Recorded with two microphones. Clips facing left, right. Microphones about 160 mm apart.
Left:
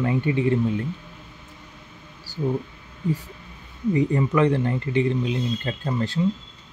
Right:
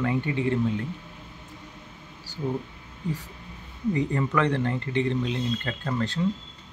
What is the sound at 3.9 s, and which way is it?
Speech, 15° left (ahead or behind).